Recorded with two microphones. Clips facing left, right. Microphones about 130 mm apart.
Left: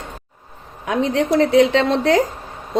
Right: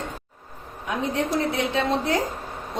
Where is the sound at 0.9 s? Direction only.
90° left.